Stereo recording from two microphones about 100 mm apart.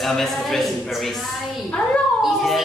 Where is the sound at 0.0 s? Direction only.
Centre (ahead or behind).